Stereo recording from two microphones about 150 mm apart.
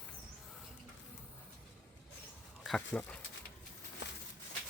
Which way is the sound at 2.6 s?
5° left (ahead or behind).